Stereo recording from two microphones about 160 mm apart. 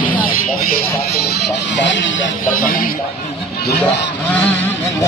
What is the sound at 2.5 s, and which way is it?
Speech, 60° left (ahead or behind).